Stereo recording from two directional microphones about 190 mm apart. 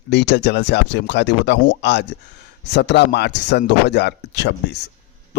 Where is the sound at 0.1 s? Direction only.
70° left (ahead or behind).